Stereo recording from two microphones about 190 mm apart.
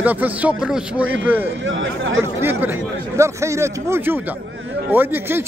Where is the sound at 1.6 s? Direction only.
90° right.